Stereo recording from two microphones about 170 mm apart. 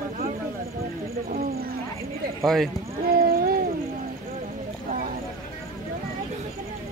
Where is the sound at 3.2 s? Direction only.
60° right (ahead or behind).